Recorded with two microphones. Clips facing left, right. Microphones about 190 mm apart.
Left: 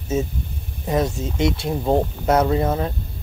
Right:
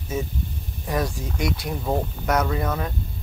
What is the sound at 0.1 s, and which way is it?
Speech, 25° left (ahead or behind).